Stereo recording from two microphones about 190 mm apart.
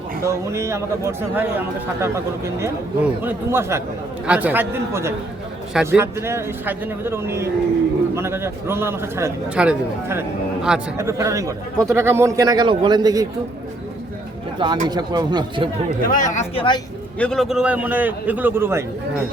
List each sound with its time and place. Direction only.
0.2 s speech: 15° right (ahead or behind)
14.6 s speech: 20° right (ahead or behind)
16.0 s speech: 45° left (ahead or behind)
17.2 s speech: 5° left (ahead or behind); by 18.9 s 10° right (ahead or behind)